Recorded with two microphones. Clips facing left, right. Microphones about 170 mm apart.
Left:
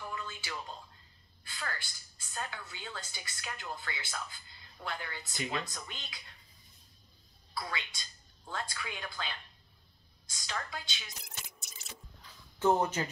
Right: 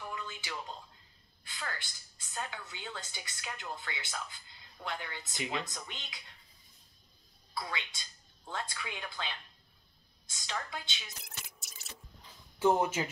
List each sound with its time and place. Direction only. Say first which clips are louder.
0.1 s music: even; 15° right (ahead or behind)
1.4 s a woman's voice: left 1 dB; 20° right (ahead or behind)
7.5 s a woman's voice: even; 20° right (ahead or behind)
11.2 s drip: left 1 dB; centre (ahead or behind)
12.5 s speech: even; 10° right (ahead or behind)